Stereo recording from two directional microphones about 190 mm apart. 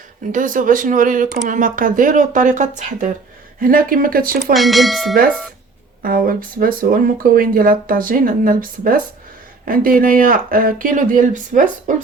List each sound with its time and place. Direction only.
0.3 s speech: 45° right (ahead or behind)
4.5 s speech: centre (ahead or behind)
6.0 s speech: 50° right (ahead or behind)